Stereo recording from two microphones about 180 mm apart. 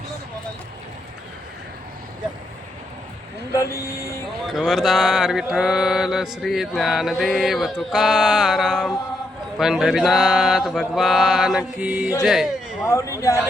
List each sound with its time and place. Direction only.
3.5 s speech: 15° left (ahead or behind)
4.4 s mantra: centre (ahead or behind)
12.8 s speech: 15° left (ahead or behind)